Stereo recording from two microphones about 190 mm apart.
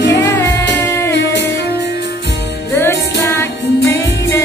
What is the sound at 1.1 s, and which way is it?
Music, 65° left (ahead or behind).